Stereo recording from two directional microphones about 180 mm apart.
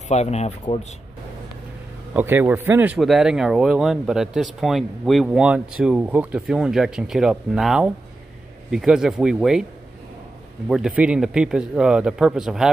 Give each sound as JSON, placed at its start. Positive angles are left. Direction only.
{"t": 0.1, "sound": "speech", "side_deg": 40}
{"t": 2.1, "sound": "speech", "side_deg": -10}
{"t": 10.7, "sound": "speech", "side_deg": -5}